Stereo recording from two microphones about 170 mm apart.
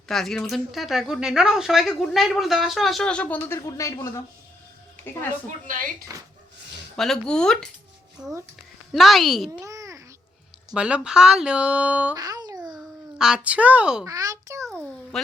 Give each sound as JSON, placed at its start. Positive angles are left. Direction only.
{"t": 0.1, "sound": "a woman's voice", "side_deg": 0}
{"t": 6.1, "sound": "speech", "side_deg": -20}
{"t": 6.9, "sound": "a woman's voice", "side_deg": 5}
{"t": 8.2, "sound": "speech", "side_deg": -20}
{"t": 8.9, "sound": "a woman's voice", "side_deg": 0}
{"t": 9.5, "sound": "babbling", "side_deg": -15}
{"t": 10.8, "sound": "speech", "side_deg": -5}
{"t": 12.1, "sound": "a sound", "side_deg": -20}
{"t": 12.7, "sound": "a child's voice", "side_deg": -5}
{"t": 14.0, "sound": "speech", "side_deg": -20}
{"t": 14.7, "sound": "a sound", "side_deg": 5}